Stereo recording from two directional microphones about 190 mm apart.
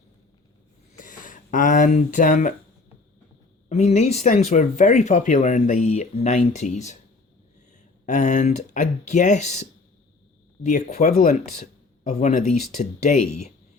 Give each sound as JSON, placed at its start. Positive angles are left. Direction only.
{"t": 0.9, "sound": "speech", "side_deg": 45}
{"t": 3.7, "sound": "speech", "side_deg": 35}
{"t": 8.0, "sound": "speech", "side_deg": 40}